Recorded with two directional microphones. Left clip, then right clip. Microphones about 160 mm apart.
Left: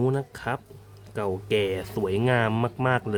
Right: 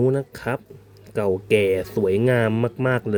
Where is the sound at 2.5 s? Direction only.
5° right (ahead or behind).